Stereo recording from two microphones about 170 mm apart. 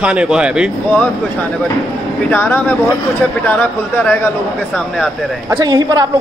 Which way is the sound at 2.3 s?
10° left (ahead or behind).